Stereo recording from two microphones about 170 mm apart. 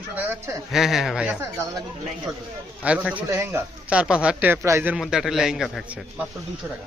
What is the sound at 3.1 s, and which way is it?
A man's voice, 15° right (ahead or behind).